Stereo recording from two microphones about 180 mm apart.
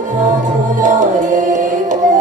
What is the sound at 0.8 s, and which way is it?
Music, 45° right (ahead or behind).